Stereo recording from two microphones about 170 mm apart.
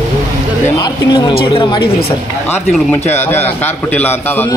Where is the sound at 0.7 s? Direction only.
20° left (ahead or behind).